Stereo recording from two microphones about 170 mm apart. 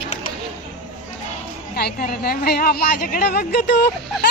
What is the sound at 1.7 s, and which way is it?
A woman's voice, 65° left (ahead or behind).